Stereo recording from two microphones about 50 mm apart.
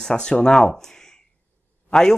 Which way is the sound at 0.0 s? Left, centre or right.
Centre.